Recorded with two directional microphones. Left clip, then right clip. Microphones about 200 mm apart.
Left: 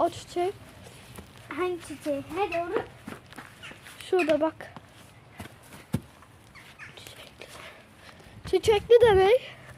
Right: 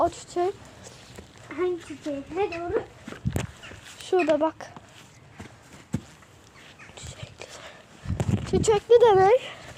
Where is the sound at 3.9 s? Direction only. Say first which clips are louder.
Right 2 dB; 15° right (ahead or behind).